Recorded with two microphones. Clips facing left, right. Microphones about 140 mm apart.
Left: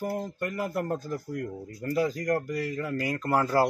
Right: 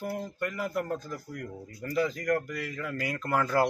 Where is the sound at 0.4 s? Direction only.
40° left (ahead or behind).